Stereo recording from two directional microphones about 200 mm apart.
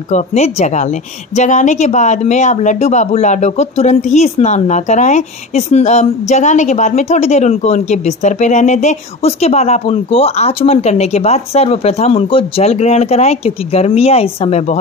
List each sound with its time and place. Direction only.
0.1 s a woman's voice: 35° left (ahead or behind)